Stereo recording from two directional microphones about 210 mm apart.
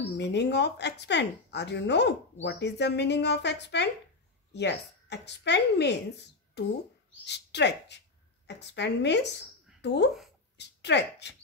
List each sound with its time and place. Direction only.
0.0 s a woman's voice: 55° left (ahead or behind)
9.8 s a sound: 55° left (ahead or behind)
10.6 s speech: 55° left (ahead or behind)